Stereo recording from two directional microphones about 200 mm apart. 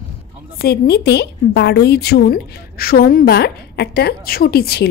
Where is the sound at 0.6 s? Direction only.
50° left (ahead or behind).